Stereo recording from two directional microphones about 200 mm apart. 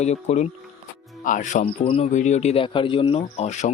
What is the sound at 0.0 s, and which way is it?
Speech, 35° left (ahead or behind).